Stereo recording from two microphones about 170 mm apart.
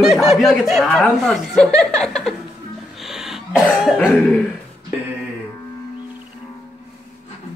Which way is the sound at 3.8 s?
5° right (ahead or behind).